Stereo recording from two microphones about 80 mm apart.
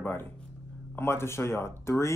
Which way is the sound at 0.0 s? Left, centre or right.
Left.